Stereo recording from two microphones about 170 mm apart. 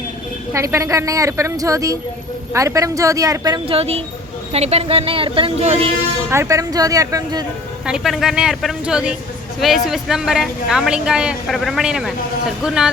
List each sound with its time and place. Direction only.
0.5 s a woman's voice: 15° right (ahead or behind)
3.7 s speech: 35° right (ahead or behind)
6.3 s speech: 15° right (ahead or behind)
7.9 s a woman's voice: 5° right (ahead or behind)